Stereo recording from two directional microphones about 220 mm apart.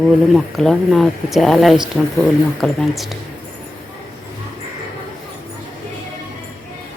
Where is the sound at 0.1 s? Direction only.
Centre (ahead or behind).